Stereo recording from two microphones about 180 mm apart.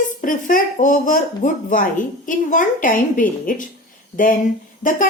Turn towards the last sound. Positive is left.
turn(degrees=45)  # may be behind; listen again after turning